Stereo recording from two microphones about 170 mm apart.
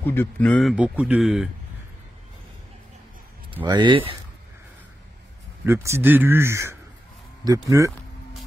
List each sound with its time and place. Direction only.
0.0 s speech: 10° left (ahead or behind)
3.6 s speech: 25° right (ahead or behind)
5.7 s speech: 15° right (ahead or behind)